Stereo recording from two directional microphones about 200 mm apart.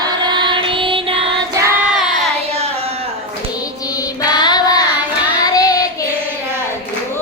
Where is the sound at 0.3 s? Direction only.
25° right (ahead or behind).